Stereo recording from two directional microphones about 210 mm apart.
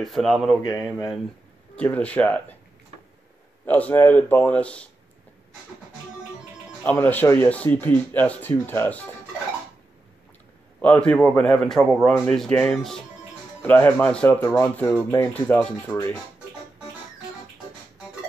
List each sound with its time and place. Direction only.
0.0 s a man's voice: centre (ahead or behind)
0.6 s speech: 15° left (ahead or behind)
1.8 s a man's voice: 5° left (ahead or behind)
3.6 s speech: 10° left (ahead or behind)
6.8 s speech: 10° left (ahead or behind)
10.8 s a man's voice: 5° left (ahead or behind)